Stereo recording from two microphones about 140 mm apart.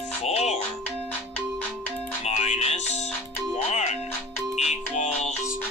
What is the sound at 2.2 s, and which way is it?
Music, 55° left (ahead or behind).